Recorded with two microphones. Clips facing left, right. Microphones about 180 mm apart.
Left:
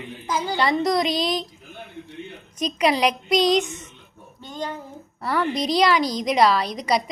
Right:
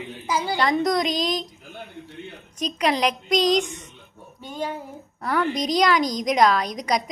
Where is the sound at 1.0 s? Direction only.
40° right (ahead or behind).